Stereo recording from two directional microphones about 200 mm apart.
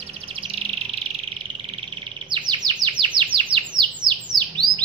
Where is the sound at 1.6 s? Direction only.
25° right (ahead or behind).